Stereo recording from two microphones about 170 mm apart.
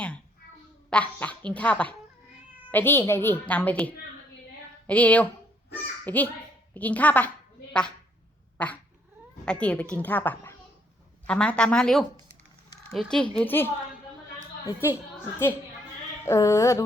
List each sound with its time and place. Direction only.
0.9 s a woman's voice: 5° left (ahead or behind)
8.5 s cat: 10° left (ahead or behind)
9.5 s a woman's voice: 5° left (ahead or behind)
14.7 s a woman's voice: 15° left (ahead or behind)
16.2 s a woman's voice: 15° left (ahead or behind)